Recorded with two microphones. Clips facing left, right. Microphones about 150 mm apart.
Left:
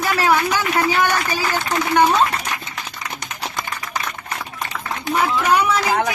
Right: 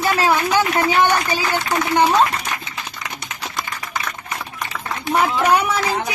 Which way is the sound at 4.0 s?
45° left (ahead or behind).